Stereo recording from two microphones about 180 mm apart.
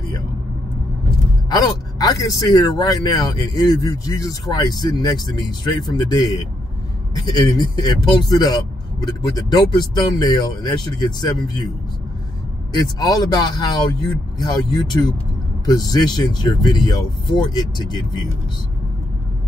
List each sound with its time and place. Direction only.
1.5 s speech: 20° left (ahead or behind)
12.7 s speech: 20° left (ahead or behind)